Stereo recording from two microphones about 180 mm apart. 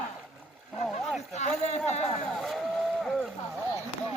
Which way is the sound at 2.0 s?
Centre (ahead or behind).